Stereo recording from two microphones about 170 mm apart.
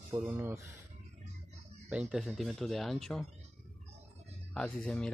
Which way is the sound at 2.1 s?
Centre (ahead or behind).